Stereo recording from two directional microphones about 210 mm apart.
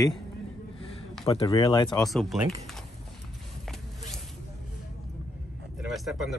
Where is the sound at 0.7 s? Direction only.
25° left (ahead or behind).